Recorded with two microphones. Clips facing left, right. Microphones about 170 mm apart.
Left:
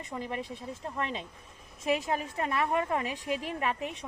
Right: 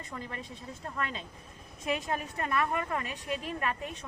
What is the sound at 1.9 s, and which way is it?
A woman's voice, 25° left (ahead or behind).